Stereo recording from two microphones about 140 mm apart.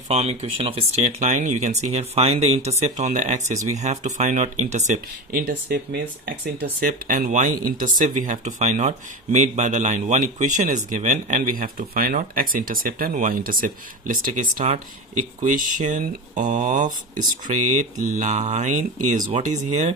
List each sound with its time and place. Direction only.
0.1 s speech: 50° right (ahead or behind)
6.8 s speech: 85° right; by 16.9 s 60° right (ahead or behind)
17.9 s speech: 60° right (ahead or behind)